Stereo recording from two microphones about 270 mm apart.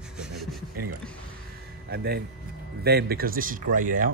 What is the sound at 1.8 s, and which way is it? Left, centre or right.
A man's voice, right.